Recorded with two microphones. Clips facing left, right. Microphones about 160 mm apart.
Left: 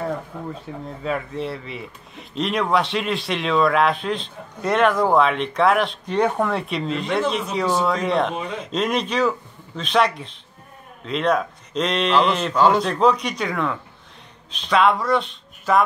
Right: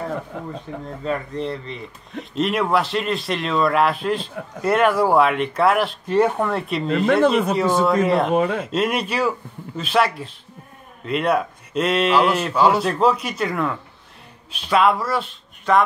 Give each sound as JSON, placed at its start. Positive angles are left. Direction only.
{"t": 1.0, "sound": "speech", "side_deg": 5}
{"t": 6.9, "sound": "speech", "side_deg": -55}
{"t": 7.8, "sound": "speech", "side_deg": -5}
{"t": 8.3, "sound": "speech", "side_deg": -55}
{"t": 8.6, "sound": "speech", "side_deg": -5}